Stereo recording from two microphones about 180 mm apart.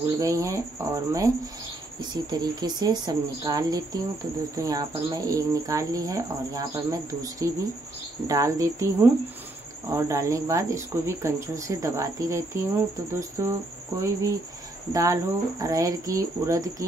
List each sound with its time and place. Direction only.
0.2 s speech: 15° right (ahead or behind)